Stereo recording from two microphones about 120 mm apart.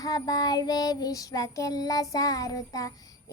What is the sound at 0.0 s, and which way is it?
Child singing, 30° left (ahead or behind).